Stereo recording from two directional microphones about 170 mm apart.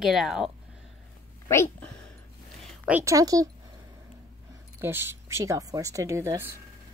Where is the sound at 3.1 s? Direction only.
20° right (ahead or behind).